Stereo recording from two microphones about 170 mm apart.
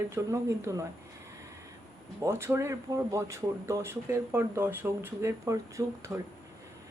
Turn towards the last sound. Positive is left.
turn(degrees=-15)  # may be behind; listen again after turning